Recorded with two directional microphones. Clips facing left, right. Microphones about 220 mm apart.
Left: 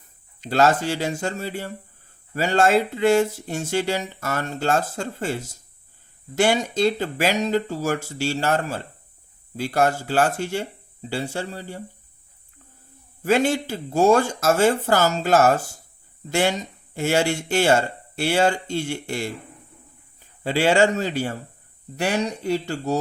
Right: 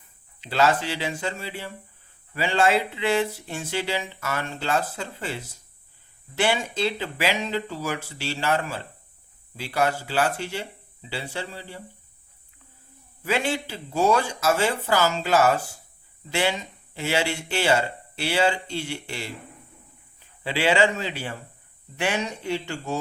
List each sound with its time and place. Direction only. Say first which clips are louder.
0.4 s speech: left 3 dB; 45° left (ahead or behind)
13.2 s speech: left 6 dB; 45° left (ahead or behind)
20.4 s speech: left 3 dB; 45° left (ahead or behind)